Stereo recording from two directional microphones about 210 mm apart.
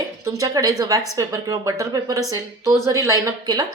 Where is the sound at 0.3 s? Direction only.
15° right (ahead or behind).